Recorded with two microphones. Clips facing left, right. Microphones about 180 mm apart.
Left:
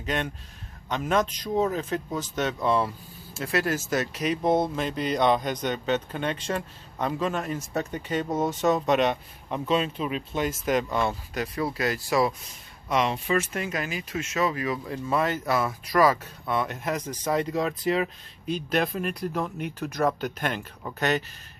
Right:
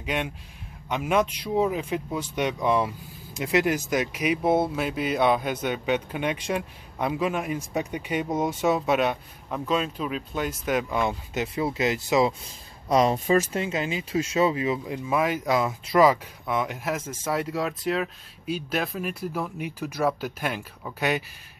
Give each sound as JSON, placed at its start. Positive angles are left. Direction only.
{"t": 0.0, "sound": "speech", "side_deg": -10}
{"t": 12.8, "sound": "speech", "side_deg": -35}
{"t": 15.0, "sound": "speech", "side_deg": -10}